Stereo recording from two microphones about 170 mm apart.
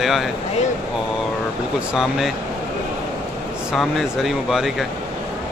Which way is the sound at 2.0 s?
Centre (ahead or behind).